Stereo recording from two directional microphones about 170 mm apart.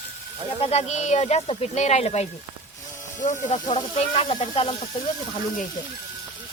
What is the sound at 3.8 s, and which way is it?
Speech, 35° left (ahead or behind).